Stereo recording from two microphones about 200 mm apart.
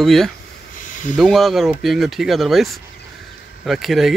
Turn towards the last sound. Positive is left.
turn(degrees=0)  # may be behind; listen again after turning